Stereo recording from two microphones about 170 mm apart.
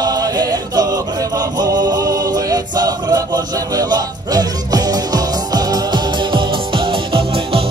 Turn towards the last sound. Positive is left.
turn(degrees=-35)  # may be behind; listen again after turning